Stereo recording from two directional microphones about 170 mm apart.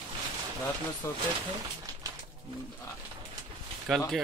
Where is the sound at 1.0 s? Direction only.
15° left (ahead or behind).